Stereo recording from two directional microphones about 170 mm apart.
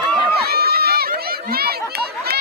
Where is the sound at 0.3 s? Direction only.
65° right (ahead or behind).